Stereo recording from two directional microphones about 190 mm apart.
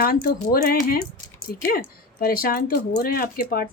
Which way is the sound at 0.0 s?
50° left (ahead or behind).